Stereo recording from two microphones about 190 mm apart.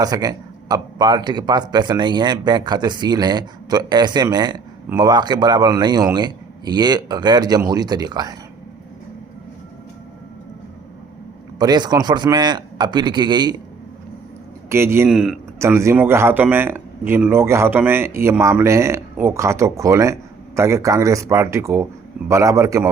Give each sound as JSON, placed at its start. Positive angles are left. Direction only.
{"t": 0.0, "sound": "a man's voice", "side_deg": -20}
{"t": 11.6, "sound": "a man's voice", "side_deg": -20}
{"t": 14.7, "sound": "a man's voice", "side_deg": -15}
{"t": 15.5, "sound": "speech", "side_deg": -15}